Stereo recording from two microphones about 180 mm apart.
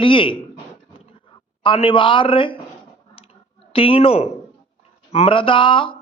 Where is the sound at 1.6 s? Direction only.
30° left (ahead or behind).